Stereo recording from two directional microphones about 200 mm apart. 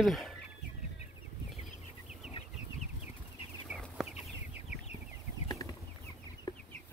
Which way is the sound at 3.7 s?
Centre (ahead or behind).